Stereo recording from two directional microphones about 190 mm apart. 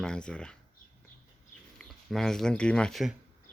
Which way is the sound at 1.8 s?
Centre (ahead or behind).